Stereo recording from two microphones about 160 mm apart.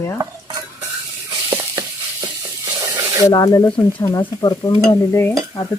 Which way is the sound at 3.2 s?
20° left (ahead or behind).